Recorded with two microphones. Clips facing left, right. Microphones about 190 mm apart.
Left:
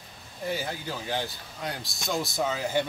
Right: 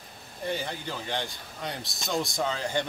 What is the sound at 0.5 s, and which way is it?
Speech, 5° left (ahead or behind).